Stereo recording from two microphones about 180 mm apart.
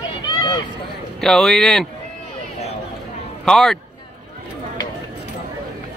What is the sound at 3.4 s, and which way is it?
Speech, centre (ahead or behind).